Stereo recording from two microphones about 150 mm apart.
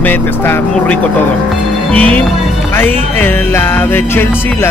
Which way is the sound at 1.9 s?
10° left (ahead or behind).